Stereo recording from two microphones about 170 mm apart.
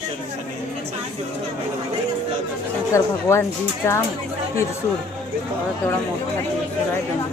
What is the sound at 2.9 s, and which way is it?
Speech, 15° left (ahead or behind).